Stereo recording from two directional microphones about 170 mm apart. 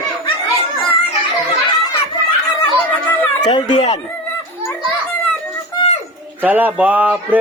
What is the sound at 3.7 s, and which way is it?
Speech, 40° left (ahead or behind).